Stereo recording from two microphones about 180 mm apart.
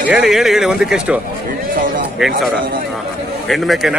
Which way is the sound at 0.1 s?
Centre (ahead or behind).